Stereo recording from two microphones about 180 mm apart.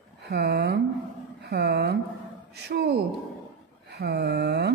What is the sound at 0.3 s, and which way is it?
A woman's voice, 65° right (ahead or behind).